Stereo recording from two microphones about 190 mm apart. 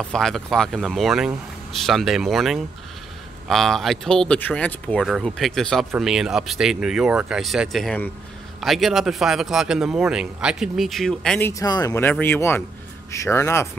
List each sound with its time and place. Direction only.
0.1 s speech: centre (ahead or behind)